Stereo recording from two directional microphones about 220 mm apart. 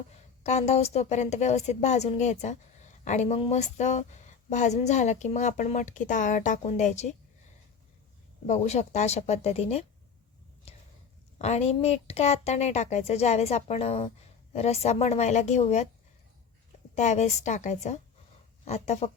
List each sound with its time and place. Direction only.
0.4 s speech: 30° left (ahead or behind)
8.4 s speech: 30° left (ahead or behind)
11.3 s speech: 30° left (ahead or behind)
16.9 s speech: 30° left (ahead or behind)